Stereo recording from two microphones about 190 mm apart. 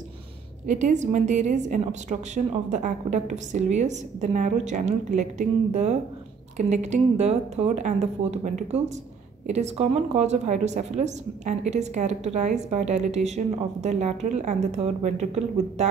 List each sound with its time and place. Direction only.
0.7 s a woman's voice: 40° right (ahead or behind)